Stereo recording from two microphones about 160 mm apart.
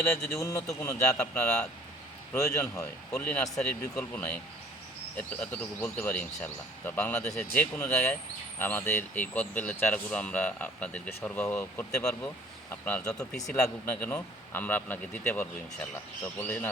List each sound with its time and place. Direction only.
0.3 s speech: 20° left (ahead or behind)
1.1 s speech: 5° left (ahead or behind)
2.3 s speech: 20° left (ahead or behind)